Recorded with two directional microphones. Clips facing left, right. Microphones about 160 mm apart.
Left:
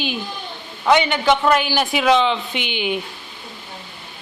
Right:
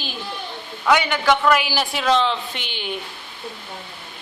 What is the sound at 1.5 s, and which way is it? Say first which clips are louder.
Speech: left 3 dB; 5° right (ahead or behind).